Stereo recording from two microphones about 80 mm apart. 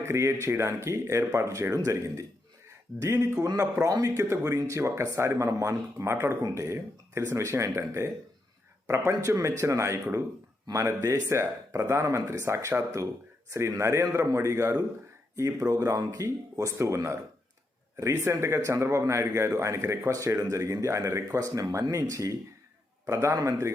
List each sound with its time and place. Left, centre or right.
0.0 s a man's voice: right